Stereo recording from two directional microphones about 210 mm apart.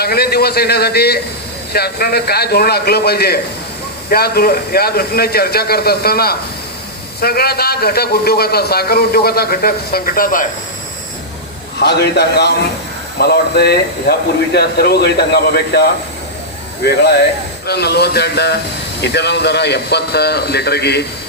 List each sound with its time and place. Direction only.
0.0 s a man's voice: 50° left (ahead or behind)
11.8 s a man's voice: 50° left (ahead or behind)